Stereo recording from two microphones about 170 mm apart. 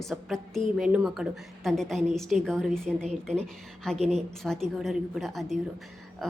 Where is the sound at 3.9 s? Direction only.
40° right (ahead or behind).